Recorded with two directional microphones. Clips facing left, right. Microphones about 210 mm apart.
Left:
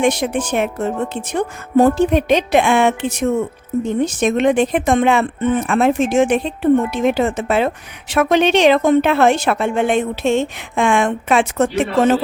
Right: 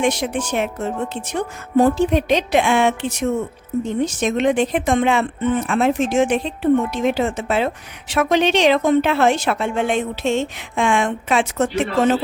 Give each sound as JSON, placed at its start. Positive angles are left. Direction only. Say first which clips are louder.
{"t": 0.0, "sound": "speech", "louder": "left 3 dB", "side_deg": 55}